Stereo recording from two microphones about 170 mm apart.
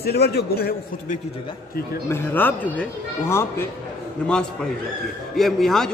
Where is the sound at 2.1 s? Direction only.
10° left (ahead or behind).